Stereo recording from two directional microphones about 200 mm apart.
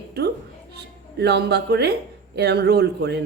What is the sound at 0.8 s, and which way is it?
A man's voice, 55° right (ahead or behind).